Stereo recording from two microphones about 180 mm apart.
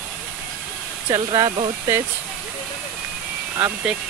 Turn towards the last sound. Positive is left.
turn(degrees=-10)  # may be behind; listen again after turning